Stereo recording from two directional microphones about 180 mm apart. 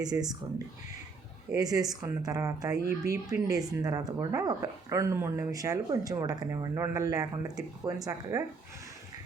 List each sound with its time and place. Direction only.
0.0 s speech: 20° right (ahead or behind)
1.5 s speech: 20° right (ahead or behind)